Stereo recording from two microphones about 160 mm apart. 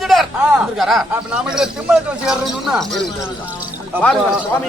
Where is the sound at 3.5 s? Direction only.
10° right (ahead or behind).